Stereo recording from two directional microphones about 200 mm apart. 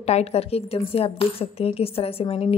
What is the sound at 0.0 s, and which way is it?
A woman's voice, 30° left (ahead or behind).